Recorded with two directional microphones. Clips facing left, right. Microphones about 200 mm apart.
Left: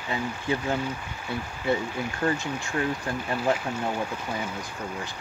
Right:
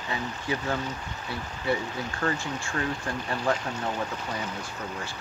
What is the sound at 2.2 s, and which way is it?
Speech, 15° left (ahead or behind).